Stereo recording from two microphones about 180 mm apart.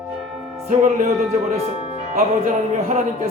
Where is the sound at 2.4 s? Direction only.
40° right (ahead or behind).